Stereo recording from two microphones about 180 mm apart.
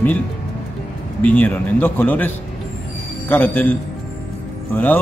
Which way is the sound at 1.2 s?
10° left (ahead or behind).